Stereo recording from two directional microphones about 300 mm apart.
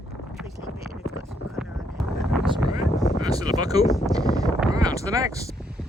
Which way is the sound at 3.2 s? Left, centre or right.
Centre.